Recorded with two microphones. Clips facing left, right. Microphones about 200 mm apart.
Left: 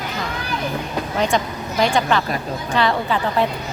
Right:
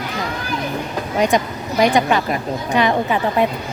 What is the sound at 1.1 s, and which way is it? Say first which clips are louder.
A woman's voice: right 4 dB; 15° right (ahead or behind).